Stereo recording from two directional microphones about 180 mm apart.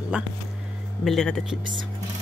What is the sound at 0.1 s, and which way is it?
Speech, 5° right (ahead or behind).